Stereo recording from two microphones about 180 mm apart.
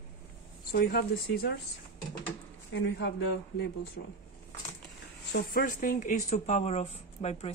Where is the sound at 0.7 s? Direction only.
60° left (ahead or behind).